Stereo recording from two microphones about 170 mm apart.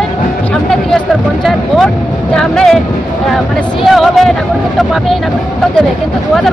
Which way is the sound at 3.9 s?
Centre (ahead or behind).